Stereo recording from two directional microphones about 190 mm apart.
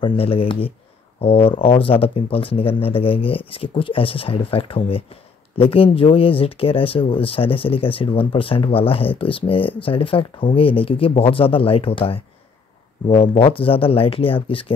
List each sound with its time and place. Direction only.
0.0 s speech: 30° left (ahead or behind)